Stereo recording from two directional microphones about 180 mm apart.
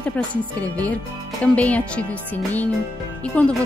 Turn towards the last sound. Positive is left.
turn(degrees=5)  # may be behind; listen again after turning